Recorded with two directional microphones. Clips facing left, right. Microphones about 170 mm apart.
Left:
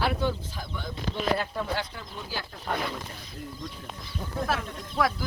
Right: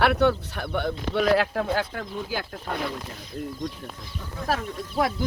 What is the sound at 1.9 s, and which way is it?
Speech, 50° right (ahead or behind).